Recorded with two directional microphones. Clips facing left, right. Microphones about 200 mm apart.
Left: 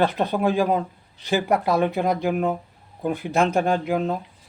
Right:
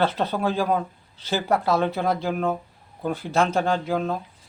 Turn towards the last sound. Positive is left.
turn(degrees=15)  # may be behind; listen again after turning